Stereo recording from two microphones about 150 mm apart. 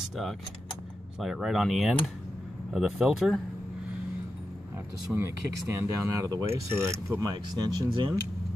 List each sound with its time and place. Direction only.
1.2 s speech: centre (ahead or behind)
5.1 s speech: 15° right (ahead or behind)
7.2 s speech: 25° right (ahead or behind)